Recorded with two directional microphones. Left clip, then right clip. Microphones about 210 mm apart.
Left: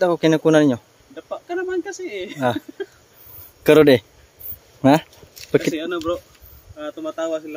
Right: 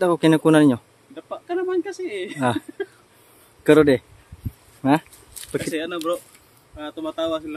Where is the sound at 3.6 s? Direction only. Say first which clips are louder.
Left 3 dB; 40° left (ahead or behind).